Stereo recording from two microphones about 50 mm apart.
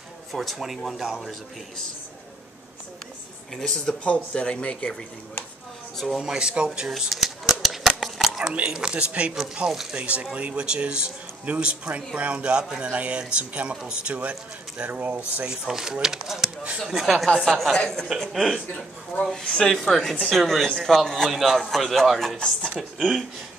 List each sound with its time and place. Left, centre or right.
0.3 s speech: centre
3.6 s a man's voice: centre
5.9 s speech: centre
6.2 s speech: centre
7.0 s a sound: centre
8.5 s a man's voice: centre
9.7 s speech: centre
9.9 s a man's voice: right
15.1 s speech: centre
17.7 s a man's voice: centre
18.3 s speech: centre
19.1 s speech: left
19.7 s a man's voice: centre
21.3 s speech: centre